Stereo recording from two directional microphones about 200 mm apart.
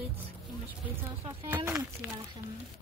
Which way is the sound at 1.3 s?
10° right (ahead or behind).